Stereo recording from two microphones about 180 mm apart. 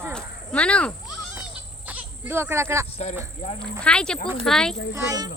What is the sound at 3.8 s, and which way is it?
Speech, 5° left (ahead or behind).